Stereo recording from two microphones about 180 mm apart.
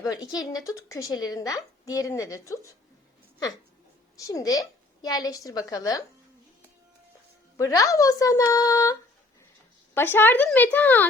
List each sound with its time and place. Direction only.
0.0 s a woman's voice: 20° left (ahead or behind)
4.3 s a woman's voice: 20° left (ahead or behind)
7.5 s a woman's voice: 20° left (ahead or behind)